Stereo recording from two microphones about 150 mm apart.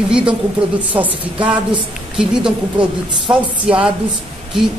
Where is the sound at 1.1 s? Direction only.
35° right (ahead or behind).